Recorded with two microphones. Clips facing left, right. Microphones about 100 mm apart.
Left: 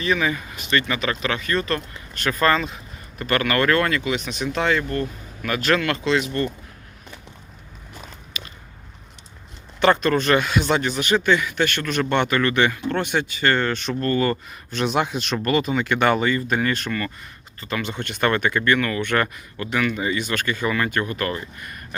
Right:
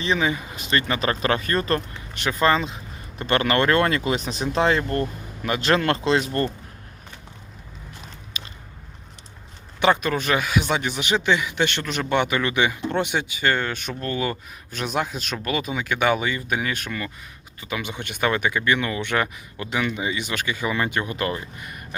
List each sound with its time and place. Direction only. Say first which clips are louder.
0.0 s speech: left 1 dB; 25° right (ahead or behind)
2.1 s speech: even; 20° right (ahead or behind); by 6.5 s 40° right (ahead or behind)
8.4 s a sound: left 1 dB; 30° right (ahead or behind)
9.8 s speech: left 3 dB; 10° right (ahead or behind)